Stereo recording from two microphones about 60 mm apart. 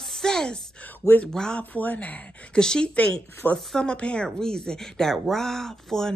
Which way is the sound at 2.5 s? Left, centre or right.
Centre.